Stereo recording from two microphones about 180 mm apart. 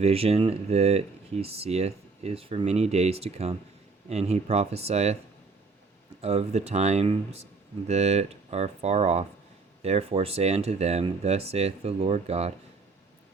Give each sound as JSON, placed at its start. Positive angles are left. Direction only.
{"t": 0.0, "sound": "speech", "side_deg": -35}
{"t": 6.2, "sound": "speech", "side_deg": -35}